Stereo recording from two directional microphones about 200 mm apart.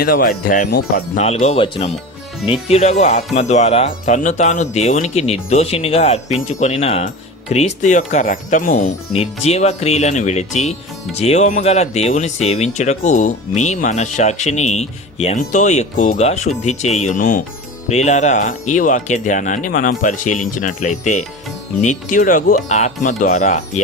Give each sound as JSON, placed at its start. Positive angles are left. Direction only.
{"t": 0.0, "sound": "speech", "side_deg": 45}
{"t": 1.2, "sound": "speech", "side_deg": 30}
{"t": 9.1, "sound": "speech", "side_deg": 30}